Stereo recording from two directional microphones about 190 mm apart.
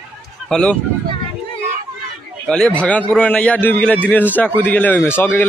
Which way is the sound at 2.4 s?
5° left (ahead or behind).